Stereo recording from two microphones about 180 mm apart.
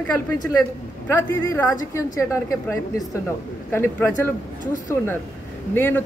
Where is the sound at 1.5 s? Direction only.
15° left (ahead or behind).